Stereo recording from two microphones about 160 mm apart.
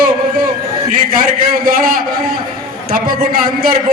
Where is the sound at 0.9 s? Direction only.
65° right (ahead or behind).